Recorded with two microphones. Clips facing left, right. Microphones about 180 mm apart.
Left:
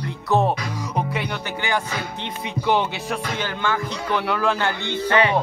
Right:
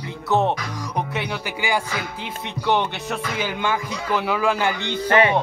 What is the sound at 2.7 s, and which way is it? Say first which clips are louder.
Music: even; 5° left (ahead or behind).